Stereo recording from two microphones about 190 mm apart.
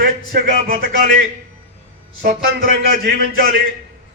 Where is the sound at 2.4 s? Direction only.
50° right (ahead or behind).